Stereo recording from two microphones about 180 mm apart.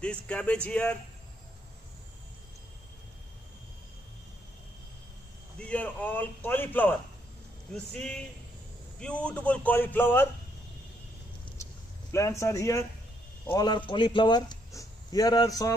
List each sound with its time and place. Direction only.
0.0 s a man's voice: 5° left (ahead or behind)
5.6 s a man's voice: 10° left (ahead or behind)
12.1 s a man's voice: 15° left (ahead or behind)